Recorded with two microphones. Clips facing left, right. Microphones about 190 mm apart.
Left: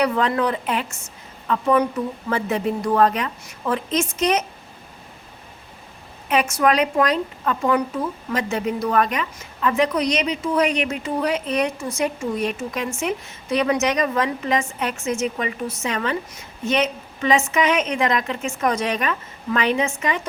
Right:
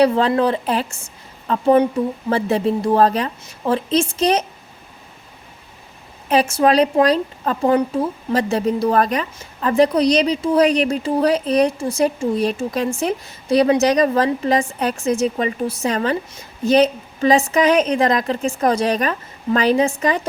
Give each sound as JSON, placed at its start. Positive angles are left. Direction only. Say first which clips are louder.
{"t": 0.0, "sound": "a woman's voice", "louder": "right 5 dB", "side_deg": -30}
{"t": 6.2, "sound": "a woman's voice", "louder": "right 4 dB", "side_deg": -35}